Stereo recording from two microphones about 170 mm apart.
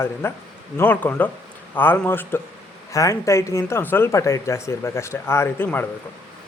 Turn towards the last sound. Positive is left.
turn(degrees=10)  # may be behind; listen again after turning